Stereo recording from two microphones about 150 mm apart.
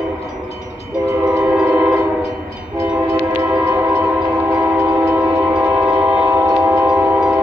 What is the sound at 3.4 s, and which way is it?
Train, 15° right (ahead or behind).